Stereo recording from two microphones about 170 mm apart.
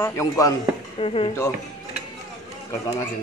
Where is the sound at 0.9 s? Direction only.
35° left (ahead or behind).